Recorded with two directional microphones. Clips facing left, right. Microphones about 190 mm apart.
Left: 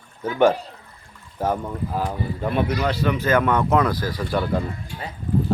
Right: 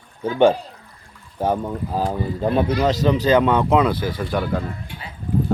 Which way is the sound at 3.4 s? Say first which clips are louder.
Right 3 dB; 20° right (ahead or behind).